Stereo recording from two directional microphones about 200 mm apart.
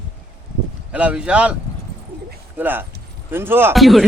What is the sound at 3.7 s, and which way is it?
Speech, centre (ahead or behind).